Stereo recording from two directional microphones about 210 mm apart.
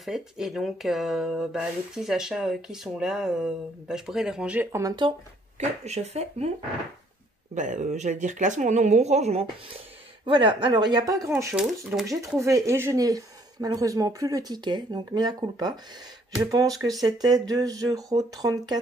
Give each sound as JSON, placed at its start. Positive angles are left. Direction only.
{"t": 0.0, "sound": "speech", "side_deg": 0}
{"t": 5.6, "sound": "speech", "side_deg": -30}
{"t": 7.5, "sound": "speech", "side_deg": -35}